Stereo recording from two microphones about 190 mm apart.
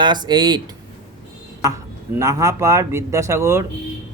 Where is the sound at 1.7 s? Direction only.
15° right (ahead or behind).